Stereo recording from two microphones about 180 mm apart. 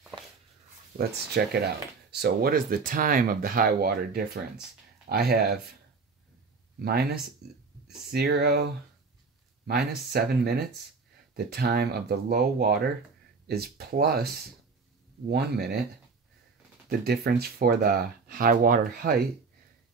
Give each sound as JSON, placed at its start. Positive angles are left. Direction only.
{"t": 0.9, "sound": "speech", "side_deg": -60}
{"t": 6.8, "sound": "speech", "side_deg": -60}
{"t": 9.7, "sound": "speech", "side_deg": -60}
{"t": 17.0, "sound": "speech", "side_deg": -60}